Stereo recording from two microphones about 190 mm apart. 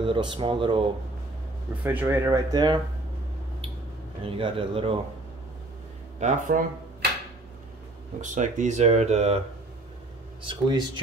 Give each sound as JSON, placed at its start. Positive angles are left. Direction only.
{"t": 0.0, "sound": "speech", "side_deg": -25}
{"t": 1.9, "sound": "speech", "side_deg": -10}
{"t": 4.2, "sound": "speech", "side_deg": -25}
{"t": 6.1, "sound": "speech", "side_deg": -40}
{"t": 8.2, "sound": "speech", "side_deg": -40}
{"t": 10.4, "sound": "speech", "side_deg": -25}